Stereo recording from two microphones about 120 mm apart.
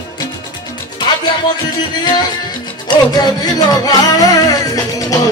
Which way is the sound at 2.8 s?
35° left (ahead or behind).